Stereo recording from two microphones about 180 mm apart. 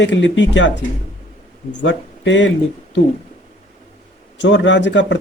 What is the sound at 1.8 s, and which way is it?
Speech, 90° left.